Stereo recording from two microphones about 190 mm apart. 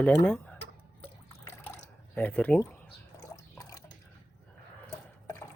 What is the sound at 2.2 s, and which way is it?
Speech, 10° left (ahead or behind).